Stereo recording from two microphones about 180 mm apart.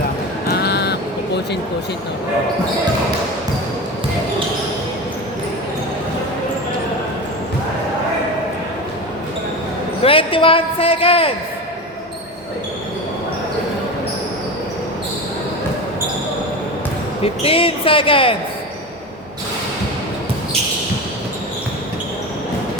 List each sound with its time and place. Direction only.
0.4 s crow: 65° left (ahead or behind)
10.0 s a man's voice: 30° left (ahead or behind)
17.2 s a man's voice: 30° left (ahead or behind)